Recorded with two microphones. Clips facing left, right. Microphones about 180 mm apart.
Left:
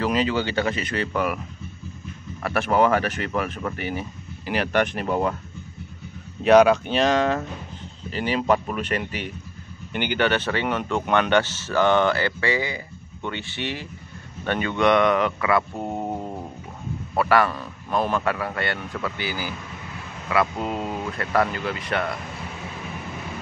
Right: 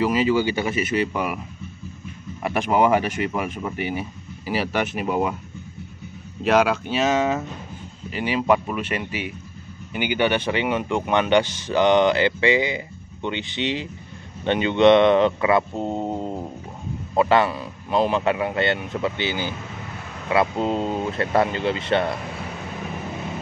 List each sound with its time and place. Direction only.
0.0 s speech: 10° right (ahead or behind)
2.4 s speech: 15° right (ahead or behind)
6.4 s a man's voice: centre (ahead or behind); by 22.0 s 25° right (ahead or behind)